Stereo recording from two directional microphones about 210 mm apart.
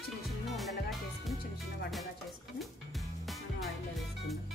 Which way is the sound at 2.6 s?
Centre (ahead or behind).